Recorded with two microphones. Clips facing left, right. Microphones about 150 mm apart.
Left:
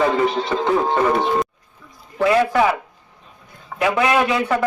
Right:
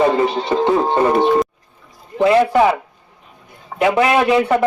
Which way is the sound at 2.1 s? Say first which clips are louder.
Right 4 dB; 25° right (ahead or behind).